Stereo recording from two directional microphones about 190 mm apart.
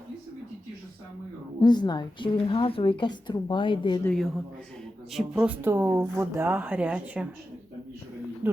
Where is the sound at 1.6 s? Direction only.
20° left (ahead or behind).